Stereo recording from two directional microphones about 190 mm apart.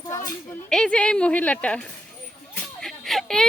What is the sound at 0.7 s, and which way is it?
Speech, 5° left (ahead or behind).